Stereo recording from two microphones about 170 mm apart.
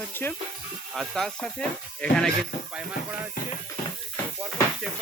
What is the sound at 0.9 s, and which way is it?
Speech, centre (ahead or behind).